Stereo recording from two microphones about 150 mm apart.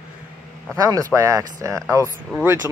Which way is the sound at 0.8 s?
25° right (ahead or behind).